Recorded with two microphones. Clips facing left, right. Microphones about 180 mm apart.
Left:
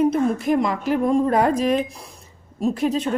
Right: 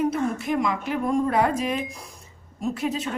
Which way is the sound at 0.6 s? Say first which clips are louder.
Left 5 dB; 40° left (ahead or behind).